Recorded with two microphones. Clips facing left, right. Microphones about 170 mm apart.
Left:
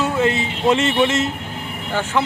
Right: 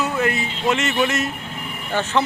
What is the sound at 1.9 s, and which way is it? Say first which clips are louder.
Speech: even; 10° left (ahead or behind).